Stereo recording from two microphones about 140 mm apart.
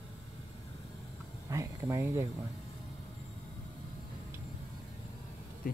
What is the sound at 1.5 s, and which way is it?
Speech, 20° right (ahead or behind).